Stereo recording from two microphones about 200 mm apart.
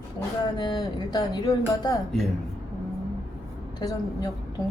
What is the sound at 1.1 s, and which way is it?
Speech, 15° left (ahead or behind).